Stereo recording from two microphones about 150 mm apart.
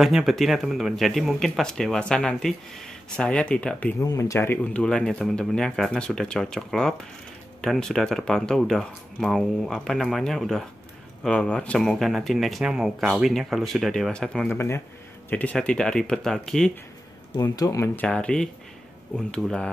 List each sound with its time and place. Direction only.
0.0 s speech: centre (ahead or behind)
4.0 s speech: 20° left (ahead or behind)
4.7 s speech: 5° left (ahead or behind)
14.5 s speech: 15° left (ahead or behind)
17.4 s speech: 20° left (ahead or behind)
18.0 s speech: 5° left (ahead or behind)